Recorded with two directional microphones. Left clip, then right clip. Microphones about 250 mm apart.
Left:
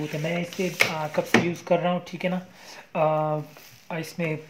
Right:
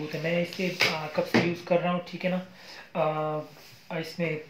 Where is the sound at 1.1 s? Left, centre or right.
Left.